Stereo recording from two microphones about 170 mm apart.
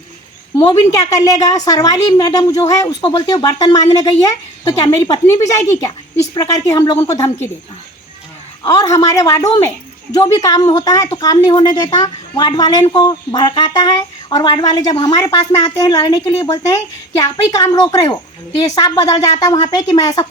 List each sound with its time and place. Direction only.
0.6 s speech: 20° left (ahead or behind)
8.6 s speech: 20° left (ahead or behind)